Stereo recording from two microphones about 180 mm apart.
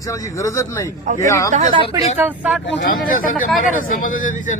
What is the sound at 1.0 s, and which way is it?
Speech, 45° right (ahead or behind).